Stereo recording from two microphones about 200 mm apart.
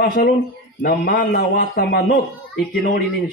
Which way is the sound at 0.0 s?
45° left (ahead or behind).